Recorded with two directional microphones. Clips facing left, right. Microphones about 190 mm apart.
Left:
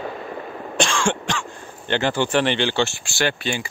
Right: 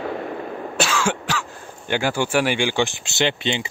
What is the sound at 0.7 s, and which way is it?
Speech, 5° right (ahead or behind).